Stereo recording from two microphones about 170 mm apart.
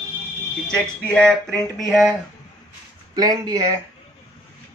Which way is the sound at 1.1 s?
5° left (ahead or behind).